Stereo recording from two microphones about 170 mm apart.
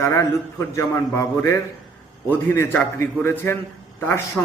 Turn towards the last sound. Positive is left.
turn(degrees=15)  # may be behind; listen again after turning